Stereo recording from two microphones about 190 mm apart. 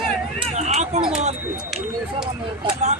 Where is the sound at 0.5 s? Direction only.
35° right (ahead or behind).